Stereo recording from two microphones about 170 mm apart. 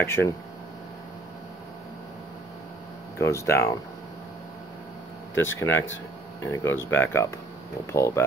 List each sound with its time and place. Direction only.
0.0 s speech: 15° left (ahead or behind)
3.2 s speech: 15° left (ahead or behind)
5.3 s speech: 15° left (ahead or behind)